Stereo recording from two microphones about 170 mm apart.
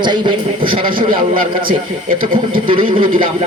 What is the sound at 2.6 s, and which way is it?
Speech, 30° right (ahead or behind).